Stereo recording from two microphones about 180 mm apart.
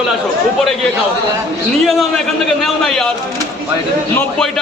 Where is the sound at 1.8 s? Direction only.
Centre (ahead or behind).